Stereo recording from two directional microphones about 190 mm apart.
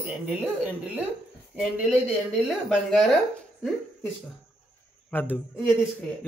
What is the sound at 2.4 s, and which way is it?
Speech, centre (ahead or behind).